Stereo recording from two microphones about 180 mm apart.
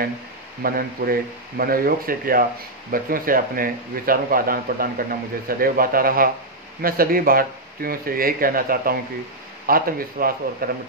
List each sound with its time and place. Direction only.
0.6 s speech: 55° right (ahead or behind)